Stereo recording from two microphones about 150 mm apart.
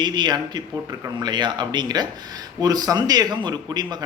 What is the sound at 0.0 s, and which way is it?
A man's voice, 30° right (ahead or behind).